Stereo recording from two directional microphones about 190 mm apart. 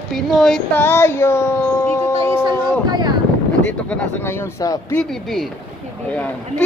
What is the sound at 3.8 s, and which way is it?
Speech, 10° left (ahead or behind).